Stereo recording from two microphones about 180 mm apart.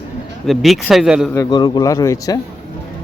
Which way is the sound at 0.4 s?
Centre (ahead or behind).